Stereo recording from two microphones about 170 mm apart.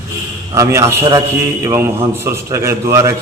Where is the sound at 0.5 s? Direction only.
15° right (ahead or behind).